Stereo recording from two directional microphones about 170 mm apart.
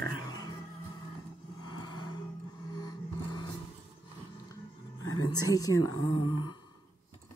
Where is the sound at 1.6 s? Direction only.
25° left (ahead or behind).